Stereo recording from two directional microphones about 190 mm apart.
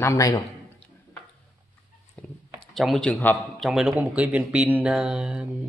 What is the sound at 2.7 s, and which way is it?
Speech, centre (ahead or behind).